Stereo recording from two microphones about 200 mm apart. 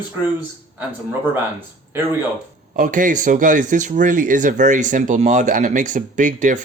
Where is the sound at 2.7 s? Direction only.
40° right (ahead or behind).